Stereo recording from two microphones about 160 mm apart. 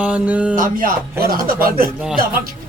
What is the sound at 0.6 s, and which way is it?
A man's voice, 60° right (ahead or behind).